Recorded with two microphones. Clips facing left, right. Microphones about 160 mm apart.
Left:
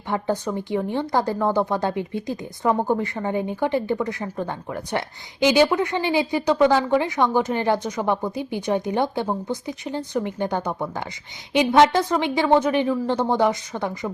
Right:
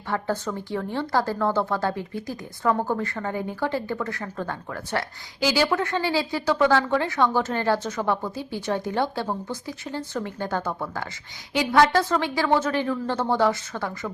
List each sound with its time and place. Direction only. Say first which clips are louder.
0.1 s a woman's voice: left 3 dB; 20° left (ahead or behind)